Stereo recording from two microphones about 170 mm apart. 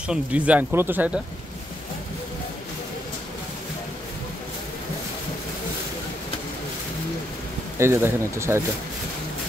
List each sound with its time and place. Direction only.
0.1 s speech: 10° right (ahead or behind)
7.8 s speech: 15° right (ahead or behind)